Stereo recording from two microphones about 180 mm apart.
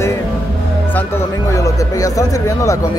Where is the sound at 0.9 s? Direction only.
15° left (ahead or behind).